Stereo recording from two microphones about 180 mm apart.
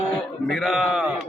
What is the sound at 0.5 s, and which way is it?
Speech, centre (ahead or behind).